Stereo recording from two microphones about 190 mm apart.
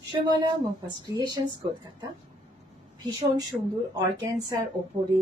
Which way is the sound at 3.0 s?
20° right (ahead or behind).